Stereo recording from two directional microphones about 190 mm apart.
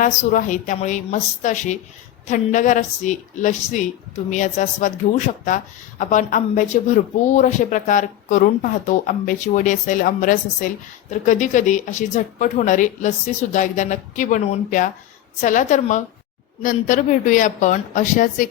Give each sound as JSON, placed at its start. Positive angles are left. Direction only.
{"t": 0.0, "sound": "a woman's voice", "side_deg": 40}